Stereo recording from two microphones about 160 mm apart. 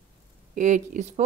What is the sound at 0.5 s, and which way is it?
Speech, 50° right (ahead or behind).